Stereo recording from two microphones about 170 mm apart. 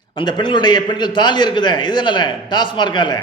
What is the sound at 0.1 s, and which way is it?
A man's voice, 30° left (ahead or behind).